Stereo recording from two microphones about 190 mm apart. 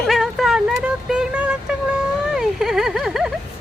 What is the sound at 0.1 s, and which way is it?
Vehicle, centre (ahead or behind).